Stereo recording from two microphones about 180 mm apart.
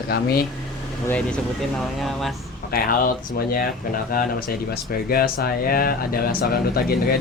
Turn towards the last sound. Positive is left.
turn(degrees=55)  # may be behind; listen again after turning